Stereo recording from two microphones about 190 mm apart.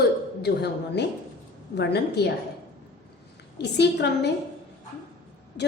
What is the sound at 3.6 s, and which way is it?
Speech, 60° left (ahead or behind).